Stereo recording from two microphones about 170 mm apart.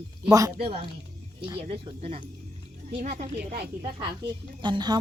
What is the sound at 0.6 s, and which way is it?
Speech, 30° right (ahead or behind).